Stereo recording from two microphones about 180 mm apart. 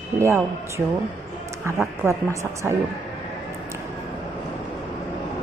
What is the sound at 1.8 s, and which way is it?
Speech, 15° right (ahead or behind).